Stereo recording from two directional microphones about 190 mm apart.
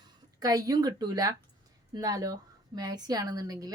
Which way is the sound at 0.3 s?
20° right (ahead or behind).